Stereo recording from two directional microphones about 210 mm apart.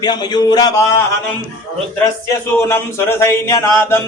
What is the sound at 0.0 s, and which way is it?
Speech, 20° left (ahead or behind).